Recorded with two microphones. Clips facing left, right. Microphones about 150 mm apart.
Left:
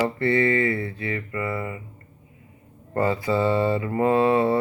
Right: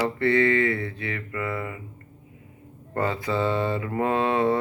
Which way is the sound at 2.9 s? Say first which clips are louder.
Left 3 dB; 5° left (ahead or behind).